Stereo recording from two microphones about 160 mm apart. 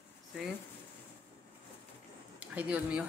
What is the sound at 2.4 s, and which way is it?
Speech, 10° right (ahead or behind).